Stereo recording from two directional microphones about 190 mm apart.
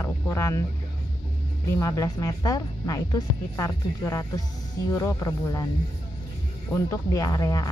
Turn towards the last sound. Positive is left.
turn(degrees=20)  # may be behind; listen again after turning